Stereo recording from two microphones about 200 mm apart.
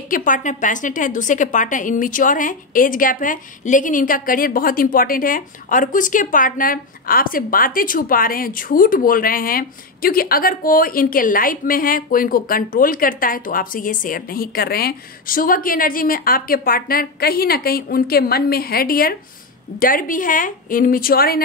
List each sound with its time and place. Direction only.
0.1 s a woman's voice: 40° left (ahead or behind)